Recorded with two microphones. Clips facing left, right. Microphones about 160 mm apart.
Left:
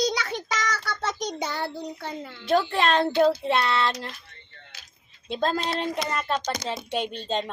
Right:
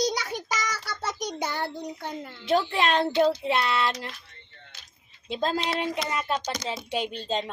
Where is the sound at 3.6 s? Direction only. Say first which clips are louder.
Left 1 dB; 5° right (ahead or behind).